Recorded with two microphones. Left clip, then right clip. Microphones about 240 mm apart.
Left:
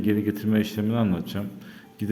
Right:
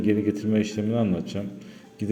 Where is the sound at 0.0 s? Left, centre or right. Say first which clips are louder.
Right 1 dB; centre.